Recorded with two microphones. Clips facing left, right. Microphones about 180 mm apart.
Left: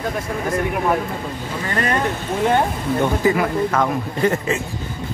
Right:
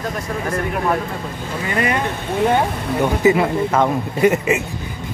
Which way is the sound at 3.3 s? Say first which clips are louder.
Right 6 dB; 25° right (ahead or behind).